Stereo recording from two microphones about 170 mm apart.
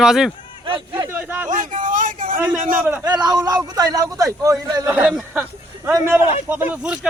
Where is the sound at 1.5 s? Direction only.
50° right (ahead or behind).